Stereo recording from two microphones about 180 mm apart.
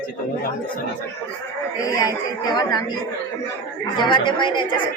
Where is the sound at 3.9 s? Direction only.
25° left (ahead or behind).